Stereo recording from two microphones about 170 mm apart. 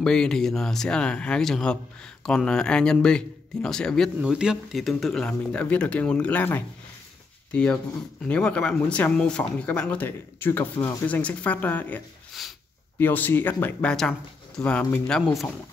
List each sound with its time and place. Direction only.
0.0 s speech: 5° left (ahead or behind)
12.3 s a sound: centre (ahead or behind)
13.0 s speech: 10° left (ahead or behind)